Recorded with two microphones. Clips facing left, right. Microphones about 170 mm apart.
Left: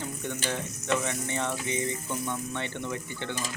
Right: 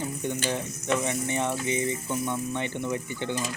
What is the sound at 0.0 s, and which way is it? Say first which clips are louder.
Frying: right 4 dB; 15° right (ahead or behind).